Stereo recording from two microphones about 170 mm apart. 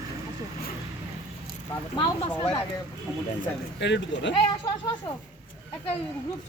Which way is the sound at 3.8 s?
90° left.